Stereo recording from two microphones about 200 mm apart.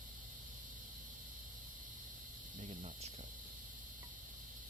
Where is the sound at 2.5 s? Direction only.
40° right (ahead or behind).